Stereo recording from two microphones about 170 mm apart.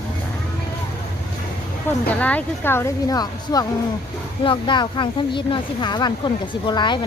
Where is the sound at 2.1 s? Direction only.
10° left (ahead or behind); by 7.0 s 25° left (ahead or behind).